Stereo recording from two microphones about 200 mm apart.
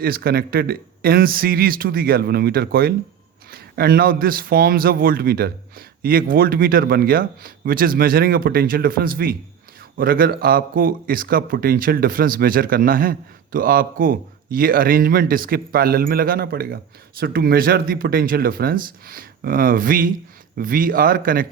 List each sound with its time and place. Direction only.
0.0 s speech: 50° right (ahead or behind)